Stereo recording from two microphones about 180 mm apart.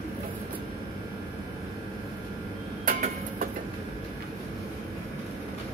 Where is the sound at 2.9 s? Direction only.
45° right (ahead or behind).